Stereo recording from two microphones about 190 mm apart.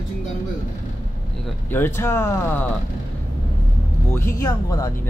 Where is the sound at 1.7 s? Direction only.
10° left (ahead or behind).